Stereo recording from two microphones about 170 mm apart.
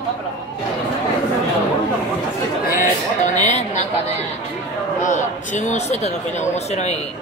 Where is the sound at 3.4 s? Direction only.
40° left (ahead or behind).